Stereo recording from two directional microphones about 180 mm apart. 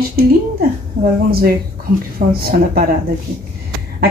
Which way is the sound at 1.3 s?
55° right (ahead or behind).